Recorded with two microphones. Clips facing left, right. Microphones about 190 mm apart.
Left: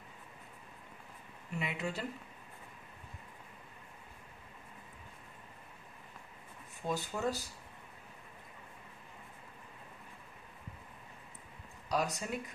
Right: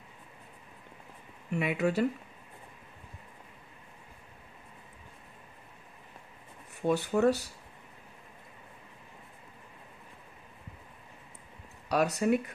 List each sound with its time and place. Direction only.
1.5 s speech: 65° right (ahead or behind)
6.9 s speech: 70° right (ahead or behind)
11.9 s speech: 65° right (ahead or behind)